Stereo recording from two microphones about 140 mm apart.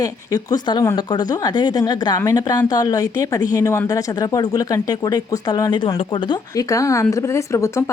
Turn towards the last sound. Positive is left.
turn(degrees=20)  # may be behind; listen again after turning